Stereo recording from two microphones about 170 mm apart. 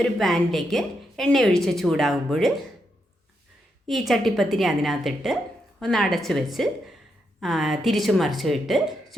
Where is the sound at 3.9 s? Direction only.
Centre (ahead or behind).